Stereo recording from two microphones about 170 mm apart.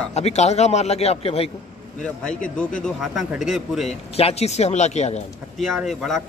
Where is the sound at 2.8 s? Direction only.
Centre (ahead or behind).